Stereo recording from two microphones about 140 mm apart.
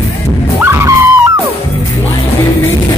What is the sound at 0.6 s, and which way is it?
Vehicle, 15° right (ahead or behind).